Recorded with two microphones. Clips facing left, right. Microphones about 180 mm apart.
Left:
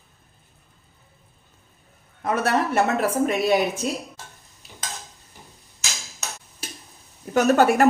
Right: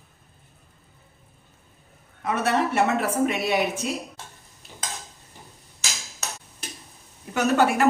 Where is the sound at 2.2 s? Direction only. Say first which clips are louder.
Left 1 dB; 40° left (ahead or behind).